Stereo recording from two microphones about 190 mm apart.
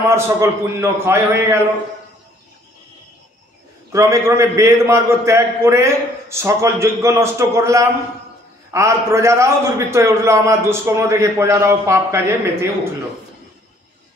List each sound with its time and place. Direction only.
0.1 s a man's voice: 15° right (ahead or behind)
3.9 s a man's voice: 15° right (ahead or behind)